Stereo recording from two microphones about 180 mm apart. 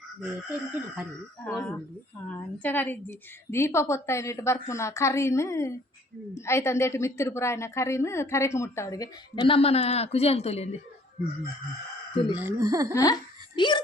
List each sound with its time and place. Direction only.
0.2 s speech: 10° right (ahead or behind)
2.2 s a woman's voice: 10° left (ahead or behind); by 10.8 s 35° left (ahead or behind)
12.3 s speech: 10° right (ahead or behind)
12.9 s laughter: 20° left (ahead or behind)